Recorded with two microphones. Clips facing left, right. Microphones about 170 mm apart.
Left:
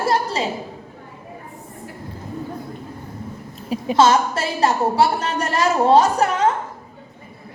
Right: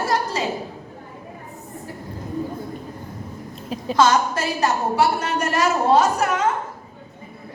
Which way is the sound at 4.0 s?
30° left (ahead or behind).